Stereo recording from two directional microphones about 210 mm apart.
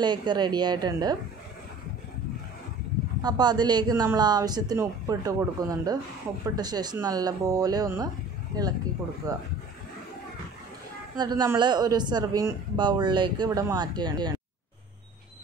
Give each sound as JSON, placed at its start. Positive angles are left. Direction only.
{"t": 0.0, "sound": "a man's voice", "side_deg": -20}
{"t": 3.2, "sound": "a man's voice", "side_deg": -20}
{"t": 9.3, "sound": "speech", "side_deg": -15}
{"t": 11.1, "sound": "a man's voice", "side_deg": -20}